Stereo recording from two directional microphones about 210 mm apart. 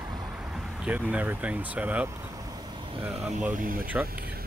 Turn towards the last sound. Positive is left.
turn(degrees=-40)  # may be behind; listen again after turning